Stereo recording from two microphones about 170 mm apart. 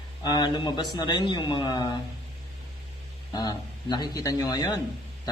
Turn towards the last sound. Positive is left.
turn(degrees=20)  # may be behind; listen again after turning